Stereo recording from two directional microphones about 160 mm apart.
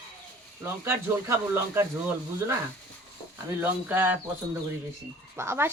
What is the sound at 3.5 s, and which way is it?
Speech, 10° right (ahead or behind).